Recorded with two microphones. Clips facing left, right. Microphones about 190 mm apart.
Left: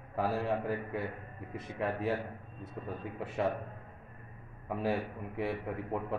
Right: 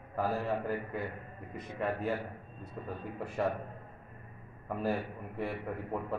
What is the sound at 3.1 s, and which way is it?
Speech, centre (ahead or behind).